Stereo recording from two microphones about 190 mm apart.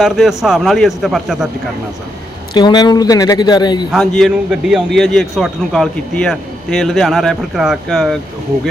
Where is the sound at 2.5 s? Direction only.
25° left (ahead or behind).